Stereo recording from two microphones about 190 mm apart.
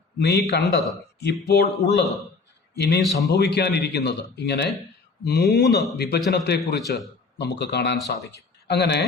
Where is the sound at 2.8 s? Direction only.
60° left (ahead or behind).